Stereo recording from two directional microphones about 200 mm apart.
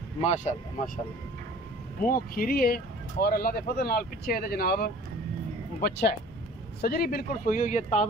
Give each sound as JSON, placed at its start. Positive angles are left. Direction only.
{"t": 0.2, "sound": "speech", "side_deg": 35}
{"t": 2.0, "sound": "speech", "side_deg": 45}